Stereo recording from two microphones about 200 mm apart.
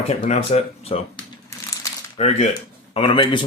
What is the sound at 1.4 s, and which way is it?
Crumpling, 15° left (ahead or behind).